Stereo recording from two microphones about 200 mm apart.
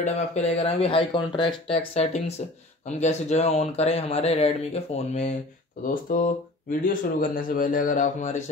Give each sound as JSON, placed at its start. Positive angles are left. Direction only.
{"t": 0.0, "sound": "speech", "side_deg": 35}